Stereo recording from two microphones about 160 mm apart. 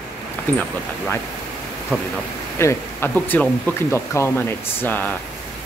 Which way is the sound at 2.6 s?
15° left (ahead or behind).